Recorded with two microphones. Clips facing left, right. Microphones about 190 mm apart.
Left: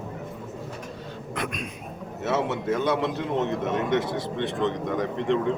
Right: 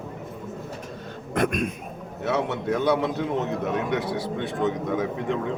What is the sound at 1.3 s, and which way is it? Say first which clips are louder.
Speech: right 9 dB; 50° right (ahead or behind).